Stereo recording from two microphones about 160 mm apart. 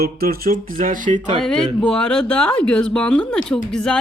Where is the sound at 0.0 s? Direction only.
75° right (ahead or behind); by 1.2 s 55° right (ahead or behind).